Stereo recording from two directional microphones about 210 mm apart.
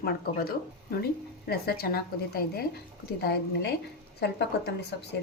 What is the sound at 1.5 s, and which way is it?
Speech, 50° left (ahead or behind).